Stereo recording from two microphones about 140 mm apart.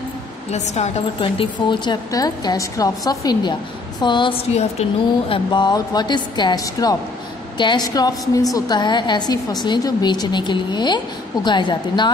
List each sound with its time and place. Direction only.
0.5 s a woman's voice: 55° left (ahead or behind)
1.2 s a woman's voice: 35° left (ahead or behind)
5.3 s a woman's voice: 35° left (ahead or behind)